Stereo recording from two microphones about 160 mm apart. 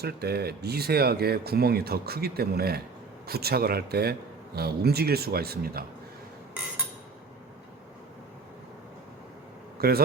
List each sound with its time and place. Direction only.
0.0 s speech: 80° right
9.7 s speech: 70° right (ahead or behind)